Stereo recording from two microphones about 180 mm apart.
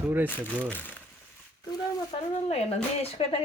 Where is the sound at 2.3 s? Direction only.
35° left (ahead or behind).